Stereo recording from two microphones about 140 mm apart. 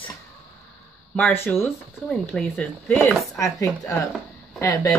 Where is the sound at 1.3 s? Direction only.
15° left (ahead or behind).